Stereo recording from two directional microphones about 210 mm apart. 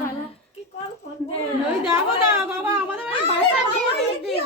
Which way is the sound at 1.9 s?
10° right (ahead or behind).